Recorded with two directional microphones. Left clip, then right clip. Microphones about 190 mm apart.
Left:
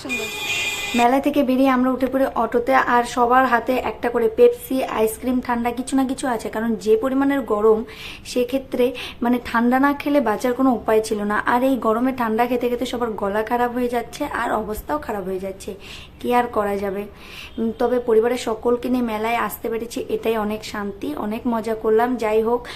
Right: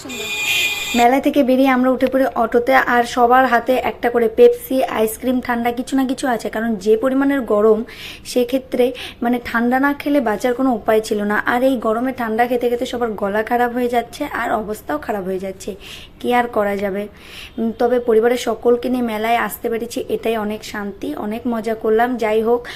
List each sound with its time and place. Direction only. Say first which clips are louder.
0.9 s speech: right 3 dB; 10° right (ahead or behind)